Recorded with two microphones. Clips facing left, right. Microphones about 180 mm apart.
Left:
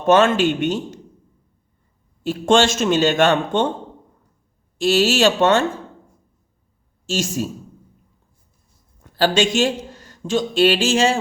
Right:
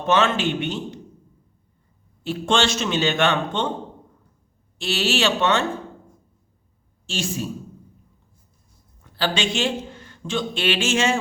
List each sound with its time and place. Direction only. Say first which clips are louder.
0.0 s a man's voice: left 6 dB; 45° left (ahead or behind)
2.2 s a man's voice: left 6 dB; 45° left (ahead or behind)
4.8 s a man's voice: left 7 dB; 45° left (ahead or behind)
7.1 s a man's voice: left 5 dB; 45° left (ahead or behind)
9.1 s speech: left 7 dB; 45° left (ahead or behind)